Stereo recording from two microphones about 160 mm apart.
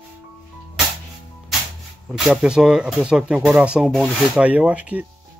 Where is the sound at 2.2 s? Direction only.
5° right (ahead or behind).